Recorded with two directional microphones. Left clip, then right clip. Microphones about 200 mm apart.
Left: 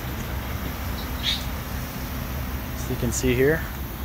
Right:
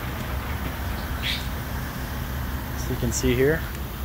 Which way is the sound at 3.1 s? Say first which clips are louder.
Left 1 dB; 5° left (ahead or behind).